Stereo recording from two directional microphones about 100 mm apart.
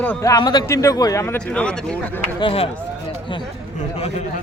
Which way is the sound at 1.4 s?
10° left (ahead or behind).